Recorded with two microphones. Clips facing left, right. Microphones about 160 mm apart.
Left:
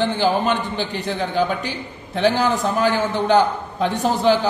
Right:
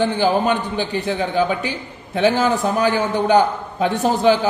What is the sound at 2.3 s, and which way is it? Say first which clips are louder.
Speech: right 2 dB; 45° right (ahead or behind).